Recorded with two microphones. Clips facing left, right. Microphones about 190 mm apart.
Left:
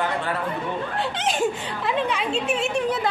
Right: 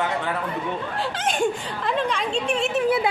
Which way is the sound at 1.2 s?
Centre (ahead or behind).